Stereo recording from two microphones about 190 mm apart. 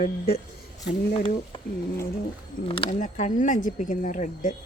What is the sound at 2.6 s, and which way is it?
Speech, 30° left (ahead or behind).